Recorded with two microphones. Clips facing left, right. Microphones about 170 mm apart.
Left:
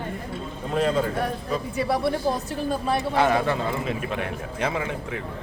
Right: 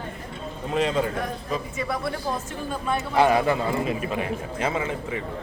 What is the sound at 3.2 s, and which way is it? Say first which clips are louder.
A man's voice: right 4 dB; 15° right (ahead or behind).